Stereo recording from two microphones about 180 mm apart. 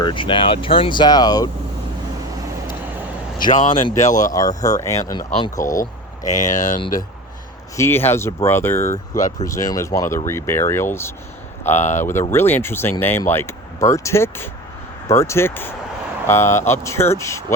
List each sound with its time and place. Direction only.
0.0 s speech: 25° left (ahead or behind)
3.5 s speech: 45° left (ahead or behind)
4.3 s speech: 20° left (ahead or behind)
5.8 s speech: 45° left (ahead or behind)
7.8 s speech: 15° left (ahead or behind)
11.8 s speech: 40° left (ahead or behind)
12.3 s speech: 10° left (ahead or behind)